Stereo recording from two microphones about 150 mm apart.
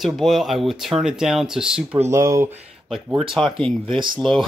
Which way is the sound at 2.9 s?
Centre (ahead or behind).